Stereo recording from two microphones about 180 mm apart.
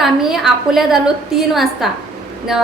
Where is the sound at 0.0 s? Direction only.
Centre (ahead or behind).